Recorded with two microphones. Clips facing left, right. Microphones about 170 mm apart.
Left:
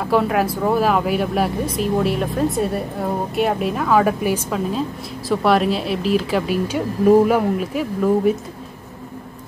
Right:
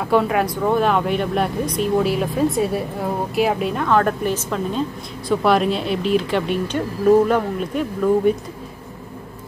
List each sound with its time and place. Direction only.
0.0 s speech: centre (ahead or behind)